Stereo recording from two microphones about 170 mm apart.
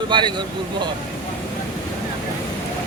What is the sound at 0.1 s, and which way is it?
Speech, 30° right (ahead or behind).